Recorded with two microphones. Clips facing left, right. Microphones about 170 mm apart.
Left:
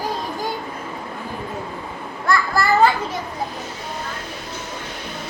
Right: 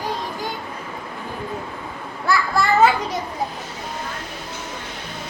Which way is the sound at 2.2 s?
5° right (ahead or behind).